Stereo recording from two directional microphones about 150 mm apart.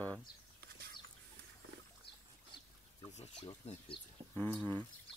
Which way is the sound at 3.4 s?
40° left (ahead or behind).